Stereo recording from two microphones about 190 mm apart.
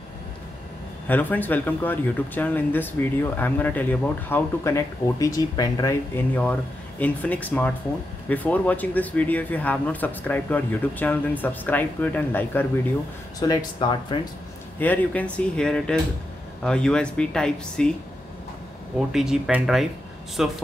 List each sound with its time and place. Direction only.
1.0 s speech: 10° left (ahead or behind)
13.4 s speech: 20° left (ahead or behind)
14.8 s speech: 10° left (ahead or behind)
18.9 s speech: centre (ahead or behind)